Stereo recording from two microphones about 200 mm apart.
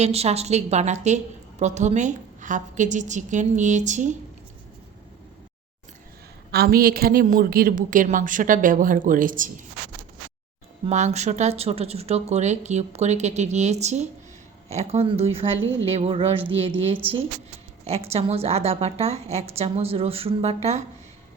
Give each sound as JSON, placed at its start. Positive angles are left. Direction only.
{"t": 0.0, "sound": "a woman's voice", "side_deg": -30}
{"t": 6.5, "sound": "a woman's voice", "side_deg": -50}
{"t": 10.8, "sound": "a woman's voice", "side_deg": -35}